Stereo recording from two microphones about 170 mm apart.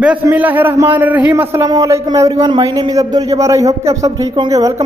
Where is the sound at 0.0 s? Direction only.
10° right (ahead or behind).